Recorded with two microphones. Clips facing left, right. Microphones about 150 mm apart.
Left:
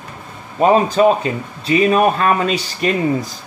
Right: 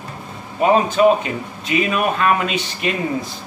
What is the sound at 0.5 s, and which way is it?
Speech, 35° left (ahead or behind).